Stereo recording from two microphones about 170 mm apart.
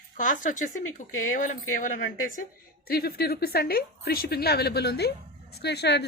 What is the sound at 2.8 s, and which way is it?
A woman's voice, 60° left (ahead or behind).